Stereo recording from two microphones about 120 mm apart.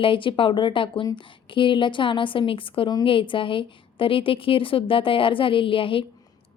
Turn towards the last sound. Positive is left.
turn(degrees=45)  # may be behind; listen again after turning